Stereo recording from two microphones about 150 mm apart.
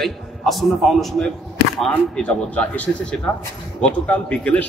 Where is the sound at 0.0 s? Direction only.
Centre (ahead or behind).